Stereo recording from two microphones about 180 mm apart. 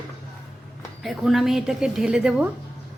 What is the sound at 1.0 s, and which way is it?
Speech, centre (ahead or behind).